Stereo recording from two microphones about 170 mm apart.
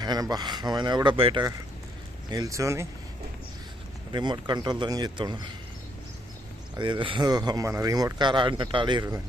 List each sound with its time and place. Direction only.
0.0 s speech: 25° right (ahead or behind)
4.1 s speech: 25° right (ahead or behind)
6.7 s speech: 30° right (ahead or behind)